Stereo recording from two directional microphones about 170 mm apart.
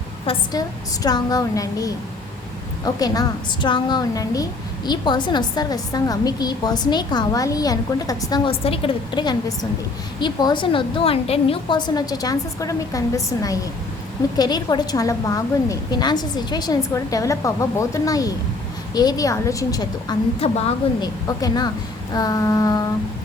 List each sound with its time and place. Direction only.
0.3 s a woman's voice: 35° left (ahead or behind)
1.0 s a woman's voice: 20° left (ahead or behind)
8.4 s a woman's voice: 35° left (ahead or behind)
20.4 s a woman's voice: 35° left (ahead or behind)
21.0 s a woman's voice: 20° left (ahead or behind)